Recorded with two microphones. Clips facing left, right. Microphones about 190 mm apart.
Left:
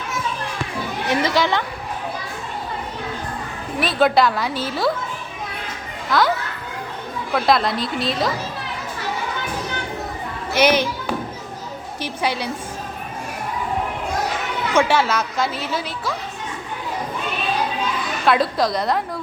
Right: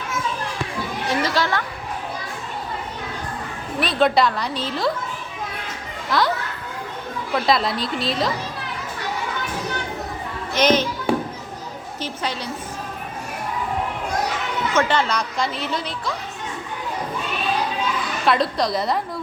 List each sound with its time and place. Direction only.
1.2 s a woman's voice: 15° left (ahead or behind)
3.8 s a woman's voice: centre (ahead or behind)
6.1 s a child's voice: centre (ahead or behind)
7.3 s a woman's voice: centre (ahead or behind)
10.5 s a woman's voice: 10° left (ahead or behind)
11.9 s a woman's voice: 10° left (ahead or behind)
14.8 s a woman's voice: 10° left (ahead or behind)
18.3 s a woman's voice: centre (ahead or behind)